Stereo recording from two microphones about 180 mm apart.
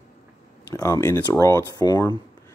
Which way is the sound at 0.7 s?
15° left (ahead or behind).